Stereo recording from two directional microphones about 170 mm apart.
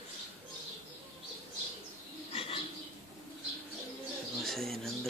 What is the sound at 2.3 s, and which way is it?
Bird, 35° left (ahead or behind).